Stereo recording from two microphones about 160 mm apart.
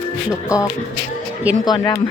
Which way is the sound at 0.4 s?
20° left (ahead or behind).